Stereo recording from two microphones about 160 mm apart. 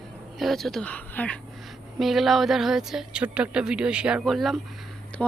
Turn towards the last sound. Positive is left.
turn(degrees=5)  # may be behind; listen again after turning